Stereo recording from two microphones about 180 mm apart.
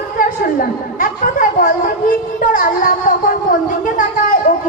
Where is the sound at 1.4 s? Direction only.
50° left (ahead or behind).